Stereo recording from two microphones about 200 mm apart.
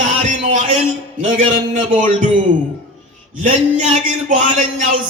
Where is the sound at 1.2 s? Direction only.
40° right (ahead or behind).